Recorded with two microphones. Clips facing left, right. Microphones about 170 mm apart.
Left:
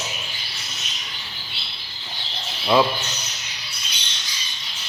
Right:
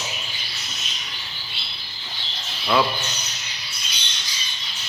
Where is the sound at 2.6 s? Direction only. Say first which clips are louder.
Left 3 dB; 20° left (ahead or behind).